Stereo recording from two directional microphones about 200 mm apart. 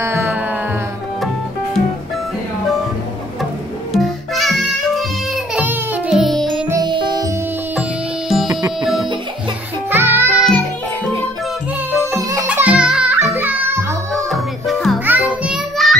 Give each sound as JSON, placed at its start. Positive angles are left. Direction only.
{"t": 0.0, "sound": "music", "side_deg": -10}
{"t": 3.9, "sound": "music", "side_deg": 0}
{"t": 6.7, "sound": "music", "side_deg": -20}
{"t": 8.3, "sound": "music", "side_deg": 0}
{"t": 9.8, "sound": "music", "side_deg": -10}
{"t": 12.2, "sound": "music", "side_deg": -15}
{"t": 14.1, "sound": "music", "side_deg": 0}